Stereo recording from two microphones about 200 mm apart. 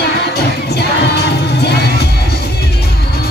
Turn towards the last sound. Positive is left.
turn(degrees=55)  # may be behind; listen again after turning